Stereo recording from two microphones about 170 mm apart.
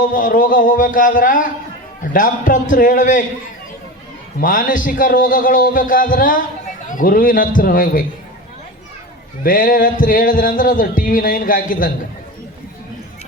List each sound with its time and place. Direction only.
0.1 s music: 50° left (ahead or behind)
4.4 s music: 55° left (ahead or behind)
6.9 s a man's voice: 55° left (ahead or behind)
9.4 s music: 55° left (ahead or behind)